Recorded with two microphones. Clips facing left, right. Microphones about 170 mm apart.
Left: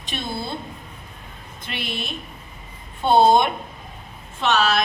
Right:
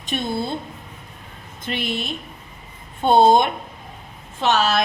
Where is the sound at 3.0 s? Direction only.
50° right (ahead or behind).